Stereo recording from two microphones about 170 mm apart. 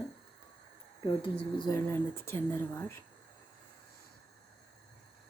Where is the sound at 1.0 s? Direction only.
25° left (ahead or behind).